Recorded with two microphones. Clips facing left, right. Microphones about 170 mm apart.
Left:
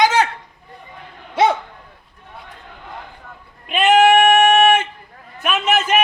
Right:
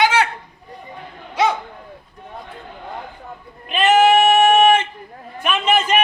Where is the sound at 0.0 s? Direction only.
40° left (ahead or behind).